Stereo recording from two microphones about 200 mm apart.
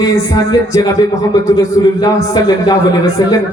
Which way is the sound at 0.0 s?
15° left (ahead or behind).